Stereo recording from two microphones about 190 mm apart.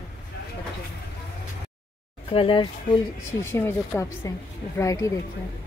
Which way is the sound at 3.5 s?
10° left (ahead or behind).